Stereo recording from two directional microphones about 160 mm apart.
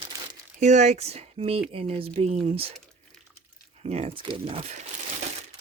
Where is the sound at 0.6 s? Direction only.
45° right (ahead or behind).